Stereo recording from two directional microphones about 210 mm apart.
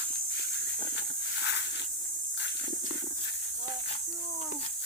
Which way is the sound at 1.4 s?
55° left (ahead or behind).